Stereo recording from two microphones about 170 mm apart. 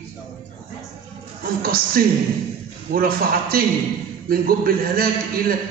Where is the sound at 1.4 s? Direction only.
60° right (ahead or behind).